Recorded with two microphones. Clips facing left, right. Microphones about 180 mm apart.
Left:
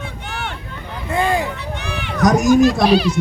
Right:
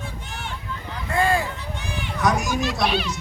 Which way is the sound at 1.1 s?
20° left (ahead or behind).